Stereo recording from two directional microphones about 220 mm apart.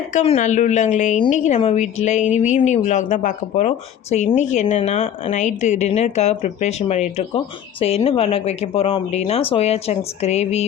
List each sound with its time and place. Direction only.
0.1 s speech: 35° left (ahead or behind)